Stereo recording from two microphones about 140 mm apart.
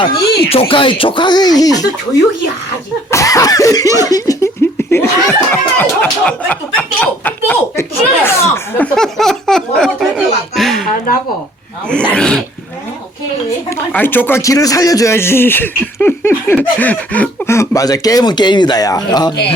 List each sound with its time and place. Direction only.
0.5 s speech: 40° left (ahead or behind)
3.1 s cough: 25° left (ahead or behind)
9.0 s laughter: centre (ahead or behind)
10.5 s a sound: centre (ahead or behind)
11.9 s speech: 5° left (ahead or behind)
13.7 s speech: 15° left (ahead or behind); by 19.5 s 30° left (ahead or behind)